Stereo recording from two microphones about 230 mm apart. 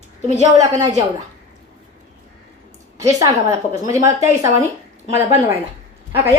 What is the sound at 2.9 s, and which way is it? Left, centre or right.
A woman's voice, centre.